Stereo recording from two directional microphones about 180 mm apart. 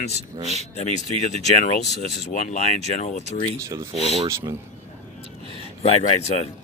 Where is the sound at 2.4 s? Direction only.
40° left (ahead or behind).